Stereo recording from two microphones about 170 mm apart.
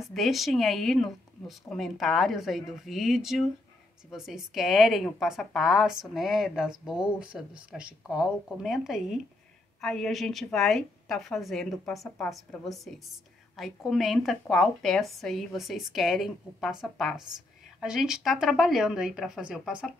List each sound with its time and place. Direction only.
0.0 s speech: centre (ahead or behind)